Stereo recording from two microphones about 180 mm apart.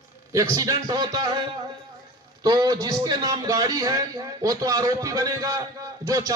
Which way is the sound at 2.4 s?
25° right (ahead or behind).